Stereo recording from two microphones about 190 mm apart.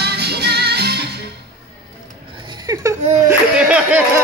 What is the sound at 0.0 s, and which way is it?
Music, 60° right (ahead or behind).